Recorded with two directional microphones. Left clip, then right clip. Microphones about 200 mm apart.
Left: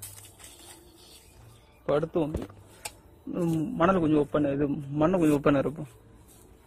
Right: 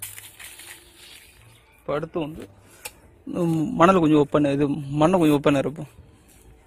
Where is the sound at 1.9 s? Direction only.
5° left (ahead or behind).